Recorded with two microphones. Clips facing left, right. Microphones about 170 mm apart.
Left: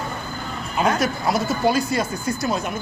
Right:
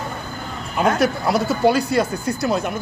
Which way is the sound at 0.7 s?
60° right (ahead or behind).